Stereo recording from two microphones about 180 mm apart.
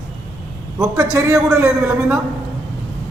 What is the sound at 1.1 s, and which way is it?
A man's voice, 15° right (ahead or behind).